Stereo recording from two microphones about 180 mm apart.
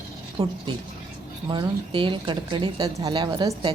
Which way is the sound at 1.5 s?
25° right (ahead or behind).